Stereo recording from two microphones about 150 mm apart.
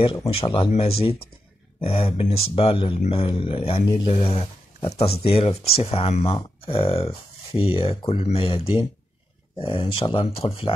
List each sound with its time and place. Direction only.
0.3 s speech: 40° left (ahead or behind)